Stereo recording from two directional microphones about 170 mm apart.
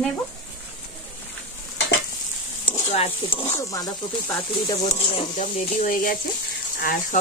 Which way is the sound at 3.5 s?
20° left (ahead or behind).